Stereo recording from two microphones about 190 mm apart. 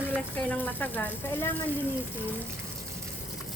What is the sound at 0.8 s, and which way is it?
Speech, 10° left (ahead or behind).